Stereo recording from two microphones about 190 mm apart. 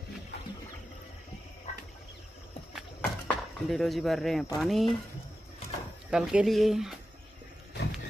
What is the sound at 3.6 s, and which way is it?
Speech, centre (ahead or behind).